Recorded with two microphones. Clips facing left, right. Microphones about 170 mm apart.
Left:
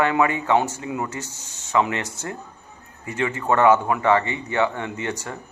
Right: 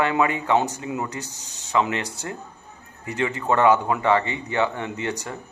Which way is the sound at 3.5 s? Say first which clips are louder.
Left 1 dB; 20° right (ahead or behind).